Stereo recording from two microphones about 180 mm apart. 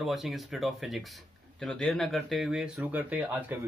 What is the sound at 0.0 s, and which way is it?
Speech, centre (ahead or behind).